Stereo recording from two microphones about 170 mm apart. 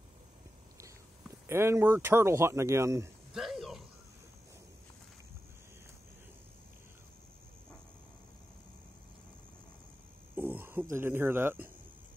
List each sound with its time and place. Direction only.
1.5 s speech: 15° right (ahead or behind)
3.3 s a sound: centre (ahead or behind)
10.3 s speech: 15° right (ahead or behind)